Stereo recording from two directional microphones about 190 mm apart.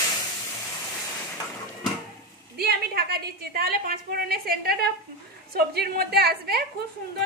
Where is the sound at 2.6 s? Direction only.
55° right (ahead or behind).